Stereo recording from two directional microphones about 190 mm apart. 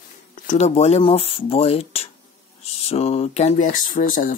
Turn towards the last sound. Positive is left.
turn(degrees=45)  # may be behind; listen again after turning